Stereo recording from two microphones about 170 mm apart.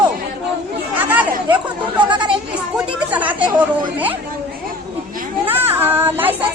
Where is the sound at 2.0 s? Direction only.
30° right (ahead or behind).